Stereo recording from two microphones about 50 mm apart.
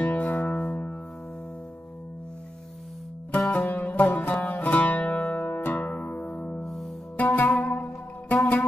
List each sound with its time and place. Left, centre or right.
0.0 s music: left
3.3 s music: left
6.6 s music: centre
7.2 s music: left